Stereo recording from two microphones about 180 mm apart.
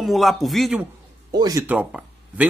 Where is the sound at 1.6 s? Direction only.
10° right (ahead or behind).